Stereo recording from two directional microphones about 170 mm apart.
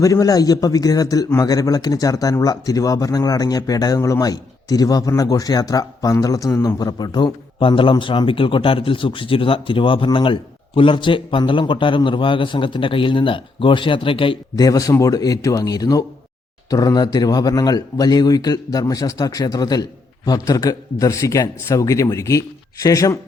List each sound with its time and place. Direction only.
0.0 s a man's voice: 20° left (ahead or behind)